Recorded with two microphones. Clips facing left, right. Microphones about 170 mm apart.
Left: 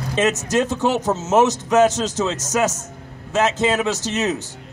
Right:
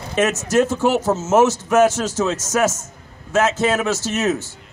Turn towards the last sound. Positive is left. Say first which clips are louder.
# right 2 dB
turn(degrees=15)  # may be behind; listen again after turning